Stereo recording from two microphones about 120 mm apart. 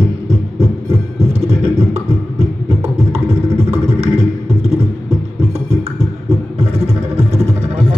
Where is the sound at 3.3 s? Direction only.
60° right (ahead or behind).